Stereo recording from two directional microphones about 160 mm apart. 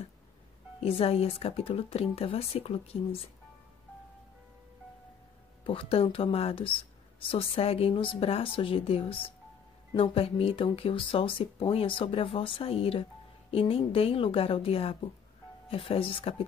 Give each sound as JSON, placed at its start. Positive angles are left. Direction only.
{"t": 0.7, "sound": "speech", "side_deg": 35}
{"t": 5.6, "sound": "speech", "side_deg": 35}